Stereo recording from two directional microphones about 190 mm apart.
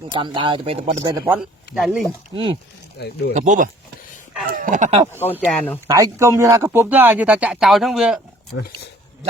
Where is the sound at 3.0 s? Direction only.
60° left (ahead or behind).